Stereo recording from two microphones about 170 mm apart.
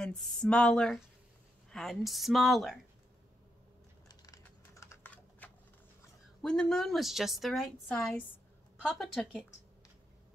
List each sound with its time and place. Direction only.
0.0 s a woman's voice: 5° left (ahead or behind)
4.1 s a sound: 20° left (ahead or behind)
5.0 s typing: 10° left (ahead or behind)
6.4 s a woman's voice: 5° left (ahead or behind)